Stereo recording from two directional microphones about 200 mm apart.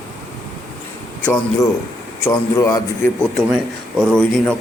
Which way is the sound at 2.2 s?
15° left (ahead or behind).